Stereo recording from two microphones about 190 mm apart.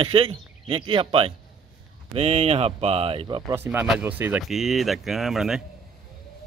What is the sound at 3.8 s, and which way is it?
Speech, 5° right (ahead or behind).